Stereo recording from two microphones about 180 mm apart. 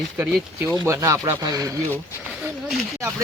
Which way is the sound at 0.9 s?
15° right (ahead or behind).